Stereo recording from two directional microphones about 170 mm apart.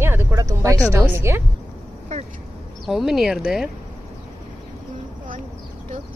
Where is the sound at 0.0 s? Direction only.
15° right (ahead or behind).